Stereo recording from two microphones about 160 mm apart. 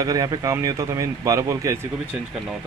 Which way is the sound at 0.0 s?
25° right (ahead or behind).